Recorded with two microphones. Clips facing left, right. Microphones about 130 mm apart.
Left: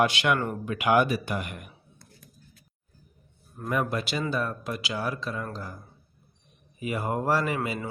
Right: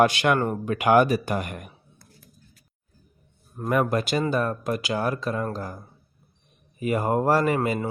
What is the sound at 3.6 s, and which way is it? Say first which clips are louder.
Speech: right 5 dB; 50° right (ahead or behind).